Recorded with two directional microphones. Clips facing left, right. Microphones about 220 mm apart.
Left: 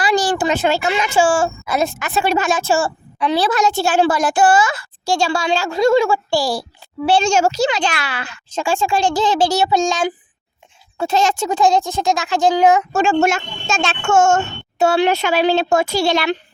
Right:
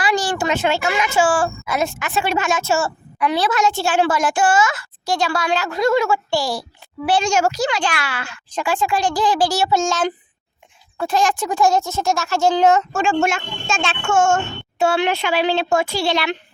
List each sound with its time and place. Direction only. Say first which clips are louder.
0.0 s a woman's voice: left 3 dB; 35° left (ahead or behind); by 10.1 s 15° left (ahead or behind)
10.9 s speech: left 2 dB; 25° left (ahead or behind)
12.9 s speech: left 3 dB; 40° left (ahead or behind)